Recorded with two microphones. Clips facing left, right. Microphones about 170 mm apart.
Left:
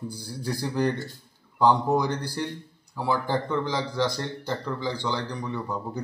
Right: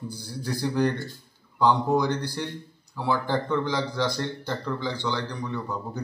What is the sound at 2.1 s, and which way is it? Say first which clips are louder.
Speech: right 2 dB; 35° left (ahead or behind).